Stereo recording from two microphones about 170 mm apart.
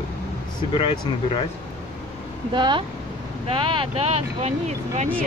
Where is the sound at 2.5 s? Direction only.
30° right (ahead or behind).